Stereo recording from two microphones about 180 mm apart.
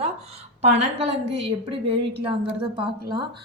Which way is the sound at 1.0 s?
35° right (ahead or behind).